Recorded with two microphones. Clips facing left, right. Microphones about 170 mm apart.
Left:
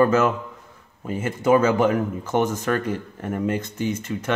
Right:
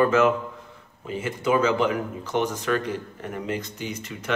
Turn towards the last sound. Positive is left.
turn(degrees=50)  # may be behind; listen again after turning